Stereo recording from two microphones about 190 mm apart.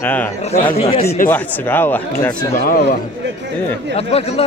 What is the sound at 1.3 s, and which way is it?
Speech, 10° left (ahead or behind).